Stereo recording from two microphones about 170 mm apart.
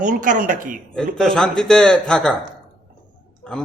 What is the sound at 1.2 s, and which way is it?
A man's voice, 5° left (ahead or behind).